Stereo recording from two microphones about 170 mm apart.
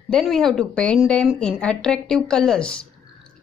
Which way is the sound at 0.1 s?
Centre (ahead or behind).